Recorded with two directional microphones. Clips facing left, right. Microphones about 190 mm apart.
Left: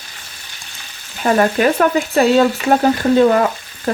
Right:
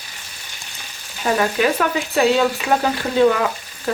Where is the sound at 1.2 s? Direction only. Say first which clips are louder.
Left 4 dB; 50° left (ahead or behind).